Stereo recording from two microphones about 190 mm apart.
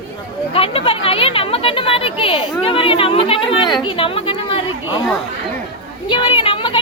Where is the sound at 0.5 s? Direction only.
30° left (ahead or behind).